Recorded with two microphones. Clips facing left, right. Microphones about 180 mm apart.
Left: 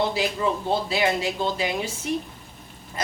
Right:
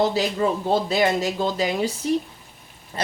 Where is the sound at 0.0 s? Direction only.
40° right (ahead or behind).